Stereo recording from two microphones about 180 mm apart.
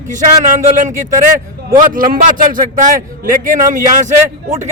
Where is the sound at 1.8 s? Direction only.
50° right (ahead or behind).